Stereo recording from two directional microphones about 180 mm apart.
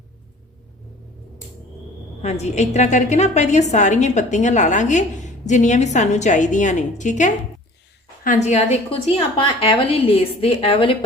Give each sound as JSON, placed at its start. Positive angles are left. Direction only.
{"t": 2.2, "sound": "a woman's voice", "side_deg": 35}